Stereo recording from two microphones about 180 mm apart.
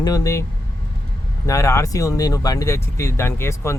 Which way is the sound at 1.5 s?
15° left (ahead or behind).